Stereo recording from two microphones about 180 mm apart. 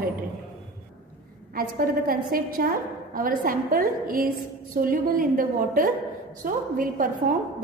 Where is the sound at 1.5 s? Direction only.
50° right (ahead or behind).